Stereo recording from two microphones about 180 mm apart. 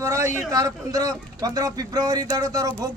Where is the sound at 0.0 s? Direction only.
15° right (ahead or behind).